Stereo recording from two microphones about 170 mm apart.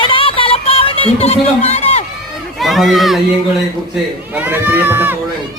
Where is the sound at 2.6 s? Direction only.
Centre (ahead or behind).